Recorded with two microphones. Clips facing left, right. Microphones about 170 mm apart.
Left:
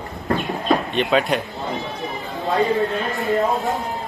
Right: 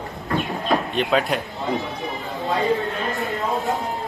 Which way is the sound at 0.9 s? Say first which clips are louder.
Left 2 dB; centre (ahead or behind).